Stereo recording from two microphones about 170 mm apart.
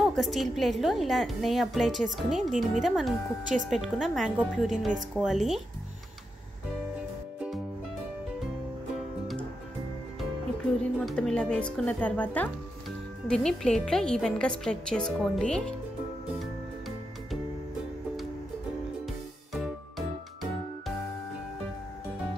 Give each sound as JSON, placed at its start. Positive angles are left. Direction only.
{"t": 0.0, "sound": "a woman's voice", "side_deg": 0}
{"t": 10.8, "sound": "a woman's voice", "side_deg": 5}